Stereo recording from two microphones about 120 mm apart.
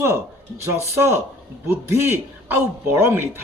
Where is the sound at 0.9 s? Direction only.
20° right (ahead or behind).